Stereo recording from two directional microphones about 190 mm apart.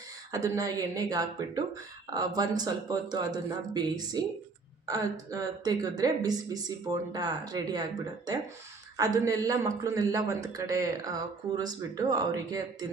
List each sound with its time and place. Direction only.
0.3 s a man's voice: 20° right (ahead or behind)